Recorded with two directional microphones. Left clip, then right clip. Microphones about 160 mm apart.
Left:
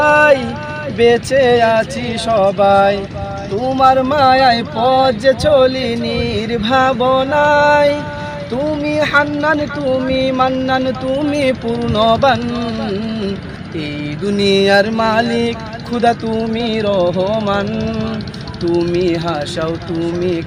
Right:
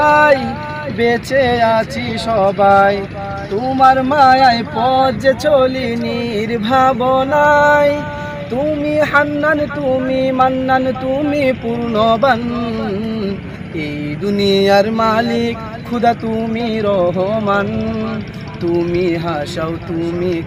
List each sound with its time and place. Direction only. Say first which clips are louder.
0.0 s a sound: even; centre (ahead or behind)
0.9 s speech: left 3 dB; 5° left (ahead or behind)
14.3 s speech: even; centre (ahead or behind)